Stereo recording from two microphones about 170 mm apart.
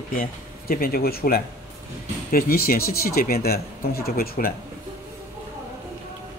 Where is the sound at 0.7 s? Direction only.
60° left (ahead or behind).